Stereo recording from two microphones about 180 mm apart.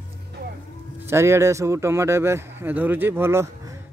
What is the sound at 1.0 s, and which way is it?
A man's voice, 15° right (ahead or behind).